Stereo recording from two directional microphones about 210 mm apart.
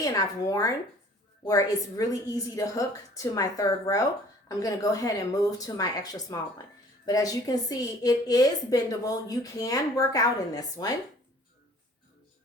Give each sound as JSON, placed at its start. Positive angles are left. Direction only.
{"t": 0.0, "sound": "a woman's voice", "side_deg": 15}